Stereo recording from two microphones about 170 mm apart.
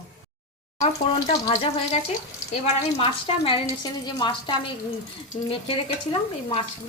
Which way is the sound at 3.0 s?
30° left (ahead or behind).